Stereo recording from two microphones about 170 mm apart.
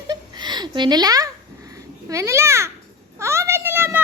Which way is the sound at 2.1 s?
15° right (ahead or behind).